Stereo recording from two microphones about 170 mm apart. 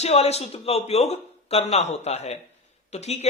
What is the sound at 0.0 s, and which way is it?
Speech, 40° left (ahead or behind).